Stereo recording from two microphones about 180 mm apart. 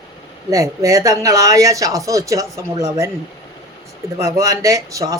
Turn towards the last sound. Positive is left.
turn(degrees=-20)  # may be behind; listen again after turning